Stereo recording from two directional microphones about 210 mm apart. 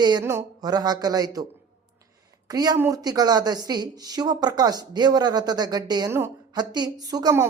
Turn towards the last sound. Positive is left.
turn(degrees=-15)  # may be behind; listen again after turning